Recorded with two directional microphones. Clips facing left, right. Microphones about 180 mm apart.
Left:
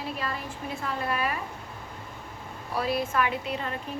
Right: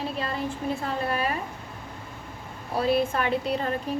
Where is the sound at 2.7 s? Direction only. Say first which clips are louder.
Right 4 dB; 25° right (ahead or behind).